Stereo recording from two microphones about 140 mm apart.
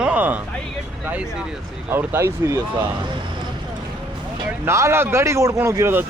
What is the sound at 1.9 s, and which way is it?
Speech, 15° right (ahead or behind).